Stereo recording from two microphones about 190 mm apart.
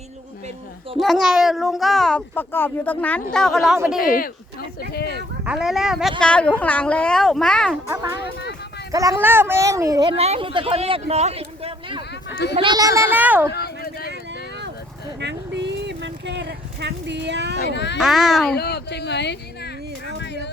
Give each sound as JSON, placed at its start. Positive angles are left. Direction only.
{"t": 0.9, "sound": "speech", "side_deg": 0}
{"t": 4.9, "sound": "speech", "side_deg": 55}
{"t": 5.5, "sound": "speech", "side_deg": 0}
{"t": 8.9, "sound": "a child's voice", "side_deg": -15}
{"t": 13.5, "sound": "a sound", "side_deg": 55}
{"t": 15.2, "sound": "a sound", "side_deg": -65}
{"t": 17.7, "sound": "speech", "side_deg": 65}
{"t": 18.0, "sound": "speech", "side_deg": 0}
{"t": 18.5, "sound": "speech", "side_deg": 55}